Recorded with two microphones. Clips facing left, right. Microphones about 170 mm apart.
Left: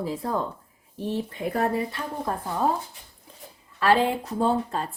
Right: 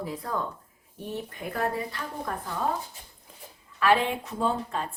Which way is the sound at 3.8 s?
30° left (ahead or behind).